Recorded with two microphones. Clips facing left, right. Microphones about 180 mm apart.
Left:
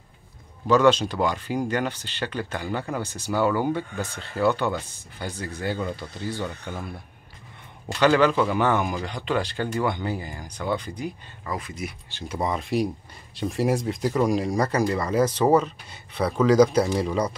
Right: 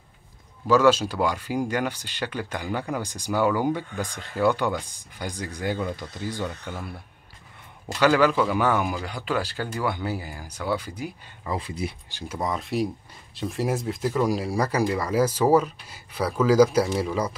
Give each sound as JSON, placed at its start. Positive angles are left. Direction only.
{"t": 0.7, "sound": "speech", "side_deg": -10}
{"t": 8.0, "sound": "speech", "side_deg": -5}
{"t": 11.5, "sound": "speech", "side_deg": -30}
{"t": 12.1, "sound": "speech", "side_deg": -10}
{"t": 12.4, "sound": "speech", "side_deg": 0}